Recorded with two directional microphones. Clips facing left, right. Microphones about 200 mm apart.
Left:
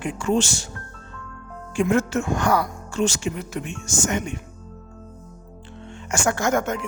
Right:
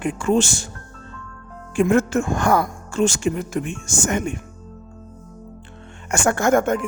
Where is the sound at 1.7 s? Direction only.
55° right (ahead or behind).